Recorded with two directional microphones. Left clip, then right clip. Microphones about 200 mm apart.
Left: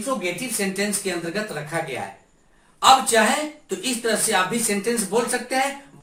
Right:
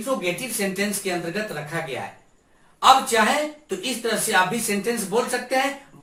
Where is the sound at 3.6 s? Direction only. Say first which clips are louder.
Left 1 dB; 15° left (ahead or behind).